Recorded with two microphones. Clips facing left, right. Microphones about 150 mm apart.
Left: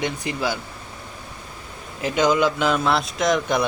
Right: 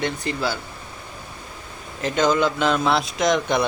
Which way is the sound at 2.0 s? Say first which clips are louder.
Left 1 dB; 10° left (ahead or behind).